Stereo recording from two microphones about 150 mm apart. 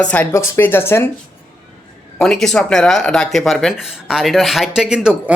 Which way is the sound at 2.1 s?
5° left (ahead or behind).